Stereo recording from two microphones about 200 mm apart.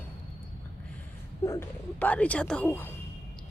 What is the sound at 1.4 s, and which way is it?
A woman's voice, 15° left (ahead or behind).